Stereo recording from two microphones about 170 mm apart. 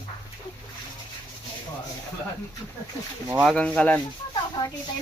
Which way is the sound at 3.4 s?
5° left (ahead or behind).